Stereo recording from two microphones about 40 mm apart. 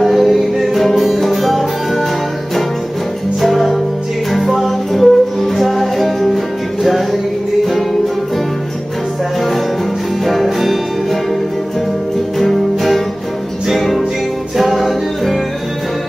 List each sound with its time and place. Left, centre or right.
0.0 s music: centre
3.3 s music: centre
10.2 s music: centre
12.4 s music: centre